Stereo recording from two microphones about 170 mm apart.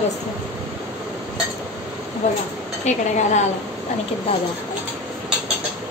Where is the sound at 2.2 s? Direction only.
45° left (ahead or behind).